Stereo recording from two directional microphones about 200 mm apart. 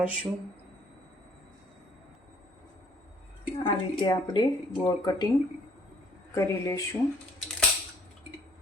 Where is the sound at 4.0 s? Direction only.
20° left (ahead or behind).